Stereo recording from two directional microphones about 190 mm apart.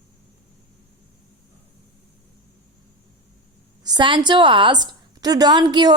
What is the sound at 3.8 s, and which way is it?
A woman's voice, 25° right (ahead or behind).